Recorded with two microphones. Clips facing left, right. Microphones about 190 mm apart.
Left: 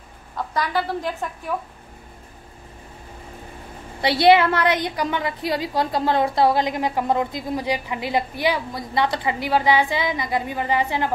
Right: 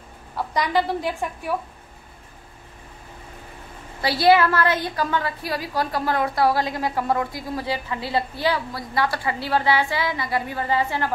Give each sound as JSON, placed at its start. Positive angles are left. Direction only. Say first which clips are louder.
{"t": 0.4, "sound": "a woman's voice", "louder": "right 2 dB", "side_deg": -15}
{"t": 4.0, "sound": "a woman's voice", "louder": "left 2 dB", "side_deg": 20}